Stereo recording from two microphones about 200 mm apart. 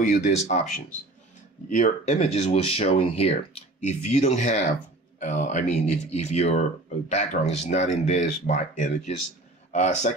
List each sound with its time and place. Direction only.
0.0 s speech: 40° left (ahead or behind)
1.7 s speech: 35° left (ahead or behind)